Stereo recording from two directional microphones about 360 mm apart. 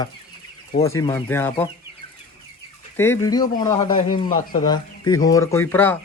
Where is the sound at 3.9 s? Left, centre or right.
Left.